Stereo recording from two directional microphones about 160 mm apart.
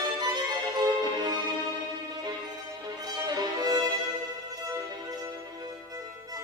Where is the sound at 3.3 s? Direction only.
25° right (ahead or behind).